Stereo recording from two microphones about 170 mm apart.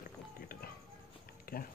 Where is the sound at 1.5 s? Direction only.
60° left (ahead or behind).